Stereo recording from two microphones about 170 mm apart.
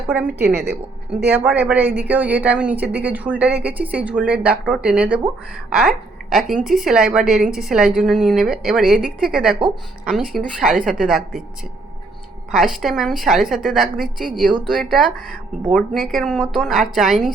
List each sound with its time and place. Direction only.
0.1 s a woman's voice: 10° right (ahead or behind)
0.4 s a woman's voice: 75° right (ahead or behind)
1.3 s a woman's voice: 10° right (ahead or behind)
12.5 s speech: centre (ahead or behind)